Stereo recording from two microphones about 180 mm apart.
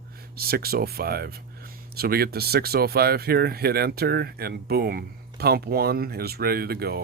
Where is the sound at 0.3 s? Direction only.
60° right (ahead or behind).